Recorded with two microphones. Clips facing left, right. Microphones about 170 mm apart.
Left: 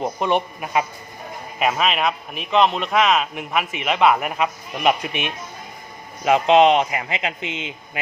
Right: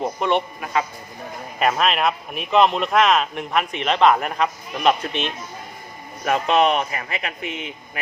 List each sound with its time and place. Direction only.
0.2 s a man's voice: 15° left (ahead or behind)
1.5 s a man's voice: 5° left (ahead or behind); by 7.7 s 20° left (ahead or behind)